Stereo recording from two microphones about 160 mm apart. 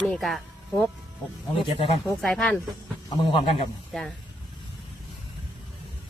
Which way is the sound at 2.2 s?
Centre (ahead or behind).